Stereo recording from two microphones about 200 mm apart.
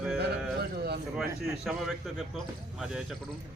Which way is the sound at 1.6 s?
Centre (ahead or behind).